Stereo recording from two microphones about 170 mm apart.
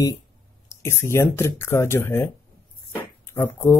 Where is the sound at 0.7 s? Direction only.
15° left (ahead or behind).